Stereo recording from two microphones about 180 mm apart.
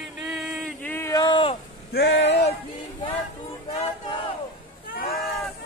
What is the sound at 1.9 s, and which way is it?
Speech, 65° left (ahead or behind).